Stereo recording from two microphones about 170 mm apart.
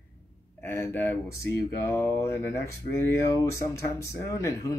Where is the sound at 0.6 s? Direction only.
15° left (ahead or behind).